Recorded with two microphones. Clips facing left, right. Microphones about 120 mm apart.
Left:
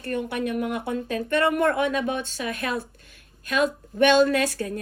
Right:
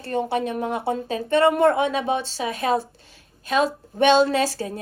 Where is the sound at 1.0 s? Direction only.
55° left (ahead or behind).